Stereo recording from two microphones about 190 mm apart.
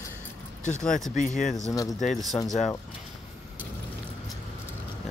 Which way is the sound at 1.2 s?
40° left (ahead or behind).